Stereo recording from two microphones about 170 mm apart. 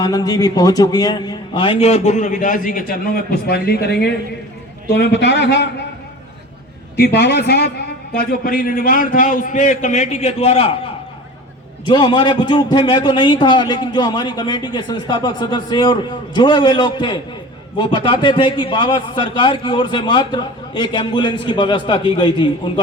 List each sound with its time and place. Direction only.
0.0 s a man's voice: 20° left (ahead or behind); by 5.6 s 85° left
6.9 s a woman's voice: 75° left (ahead or behind); by 22.7 s 25° left (ahead or behind)